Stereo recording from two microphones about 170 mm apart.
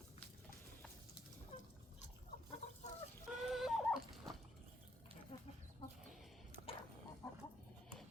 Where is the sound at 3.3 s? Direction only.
Centre (ahead or behind).